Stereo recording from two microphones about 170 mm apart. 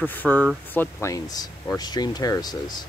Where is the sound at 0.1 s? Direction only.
10° left (ahead or behind).